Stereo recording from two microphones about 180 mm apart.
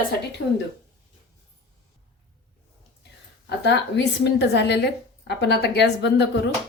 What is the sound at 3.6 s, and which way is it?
Speech, 75° left (ahead or behind).